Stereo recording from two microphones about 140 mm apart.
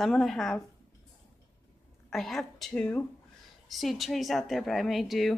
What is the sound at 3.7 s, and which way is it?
Speech, centre (ahead or behind).